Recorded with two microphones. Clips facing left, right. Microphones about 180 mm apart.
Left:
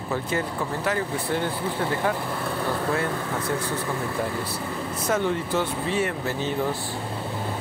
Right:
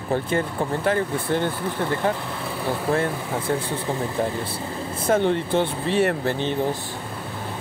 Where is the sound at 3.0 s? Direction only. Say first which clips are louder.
Right 2 dB; 25° right (ahead or behind).